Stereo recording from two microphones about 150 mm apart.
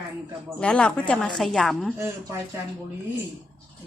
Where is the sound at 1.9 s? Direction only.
20° right (ahead or behind).